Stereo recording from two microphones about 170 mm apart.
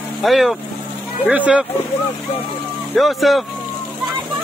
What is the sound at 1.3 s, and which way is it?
Speech, 10° right (ahead or behind).